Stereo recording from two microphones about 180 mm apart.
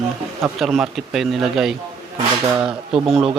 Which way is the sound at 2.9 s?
30° right (ahead or behind).